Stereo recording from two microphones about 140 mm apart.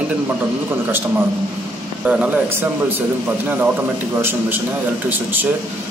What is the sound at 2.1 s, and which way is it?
A man's voice, 10° right (ahead or behind).